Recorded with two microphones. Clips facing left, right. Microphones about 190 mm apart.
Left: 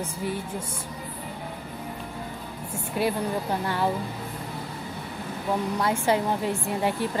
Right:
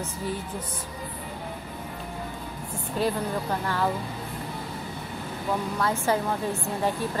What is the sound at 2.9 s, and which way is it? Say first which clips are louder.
Speech: left 1 dB; 15° left (ahead or behind).